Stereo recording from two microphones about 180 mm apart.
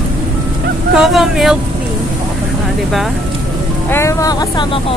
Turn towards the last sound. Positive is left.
turn(degrees=20)  # may be behind; listen again after turning